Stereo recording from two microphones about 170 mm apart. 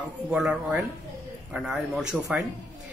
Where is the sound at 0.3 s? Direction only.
5° right (ahead or behind).